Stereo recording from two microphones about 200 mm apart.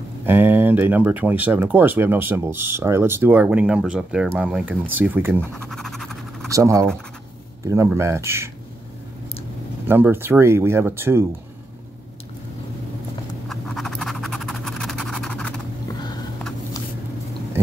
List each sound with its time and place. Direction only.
0.2 s speech: 10° right (ahead or behind)
5.7 s scratch: centre (ahead or behind)
6.5 s speech: 15° right (ahead or behind)
9.8 s speech: 10° right (ahead or behind)
13.5 s scratch: centre (ahead or behind)
15.9 s a sound: 20° left (ahead or behind)